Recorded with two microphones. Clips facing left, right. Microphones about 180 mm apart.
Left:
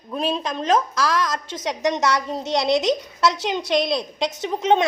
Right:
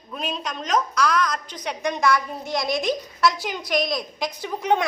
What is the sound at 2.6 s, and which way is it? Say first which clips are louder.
Speech: left 5 dB; 75° left (ahead or behind).